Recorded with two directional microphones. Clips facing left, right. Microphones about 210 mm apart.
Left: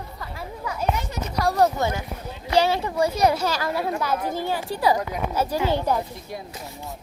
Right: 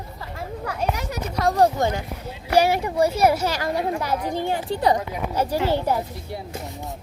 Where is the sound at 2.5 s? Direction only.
10° right (ahead or behind).